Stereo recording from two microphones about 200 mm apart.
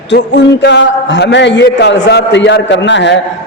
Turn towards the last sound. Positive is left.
turn(degrees=60)  # may be behind; listen again after turning